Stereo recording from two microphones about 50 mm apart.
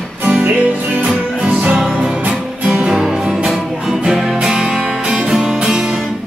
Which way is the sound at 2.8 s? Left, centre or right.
Centre.